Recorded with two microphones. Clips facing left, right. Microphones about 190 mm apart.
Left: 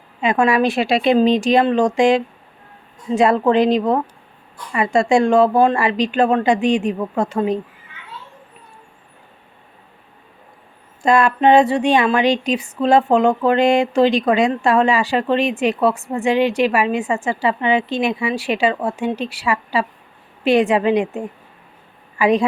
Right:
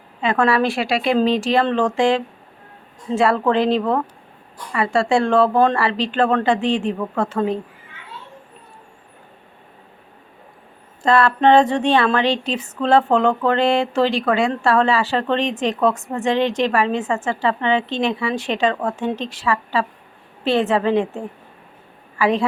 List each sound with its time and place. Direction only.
0.2 s speech: 15° left (ahead or behind)
11.0 s speech: 15° left (ahead or behind)